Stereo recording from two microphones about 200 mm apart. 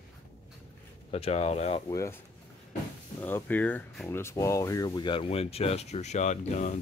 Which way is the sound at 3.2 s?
10° left (ahead or behind).